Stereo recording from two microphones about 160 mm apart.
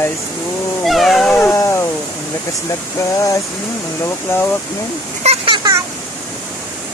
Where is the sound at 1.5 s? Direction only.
20° left (ahead or behind).